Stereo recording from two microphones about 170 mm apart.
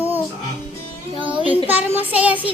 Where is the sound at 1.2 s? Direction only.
30° right (ahead or behind).